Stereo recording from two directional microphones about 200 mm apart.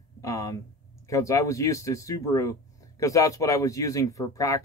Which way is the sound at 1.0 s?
15° left (ahead or behind).